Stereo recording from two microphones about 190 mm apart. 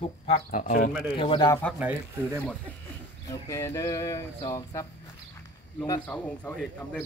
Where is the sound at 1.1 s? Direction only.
25° left (ahead or behind).